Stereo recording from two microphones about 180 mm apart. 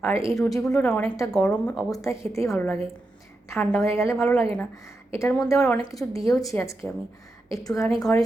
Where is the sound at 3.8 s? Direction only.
15° left (ahead or behind).